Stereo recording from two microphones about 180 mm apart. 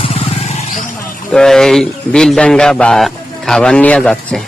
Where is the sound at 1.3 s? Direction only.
5° left (ahead or behind).